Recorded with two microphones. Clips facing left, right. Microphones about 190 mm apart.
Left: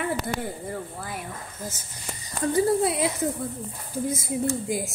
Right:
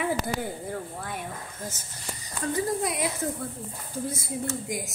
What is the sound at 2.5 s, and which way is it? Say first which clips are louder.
Speech: left 6 dB; 25° left (ahead or behind).